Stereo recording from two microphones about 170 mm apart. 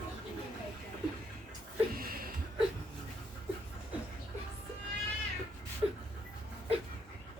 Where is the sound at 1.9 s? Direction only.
60° right (ahead or behind).